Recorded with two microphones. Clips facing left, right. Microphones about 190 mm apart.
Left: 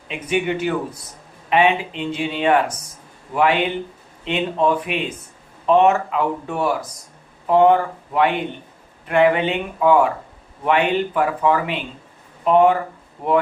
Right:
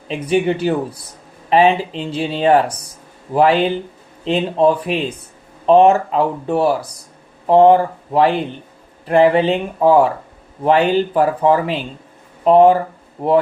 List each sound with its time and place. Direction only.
0.1 s speech: 35° right (ahead or behind)